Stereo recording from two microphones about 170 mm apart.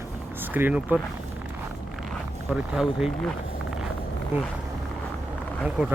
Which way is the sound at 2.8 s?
5° right (ahead or behind).